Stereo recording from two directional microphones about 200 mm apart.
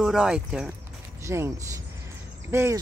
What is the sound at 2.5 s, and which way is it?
Speech, 10° right (ahead or behind).